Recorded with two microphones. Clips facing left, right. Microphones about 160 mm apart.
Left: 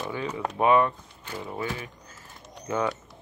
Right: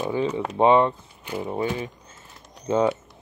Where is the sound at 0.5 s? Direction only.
25° right (ahead or behind).